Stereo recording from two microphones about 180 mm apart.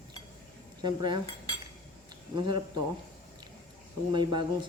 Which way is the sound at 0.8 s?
25° right (ahead or behind).